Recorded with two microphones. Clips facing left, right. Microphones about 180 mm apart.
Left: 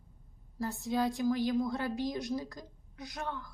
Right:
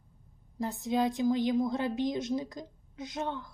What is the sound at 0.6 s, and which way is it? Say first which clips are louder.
Speech: right 3 dB; 20° right (ahead or behind).